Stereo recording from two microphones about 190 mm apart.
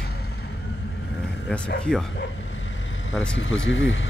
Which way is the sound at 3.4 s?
80° left.